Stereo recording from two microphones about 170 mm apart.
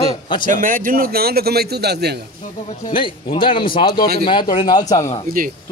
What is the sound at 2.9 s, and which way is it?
Speech, 30° left (ahead or behind).